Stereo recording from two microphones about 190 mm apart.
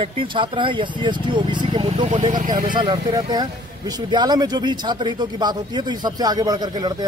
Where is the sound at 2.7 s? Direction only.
25° right (ahead or behind).